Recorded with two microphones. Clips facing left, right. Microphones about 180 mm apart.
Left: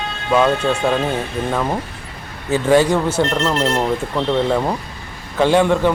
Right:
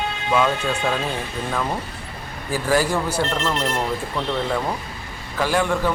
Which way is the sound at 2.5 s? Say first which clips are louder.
Left 6 dB; 25° left (ahead or behind).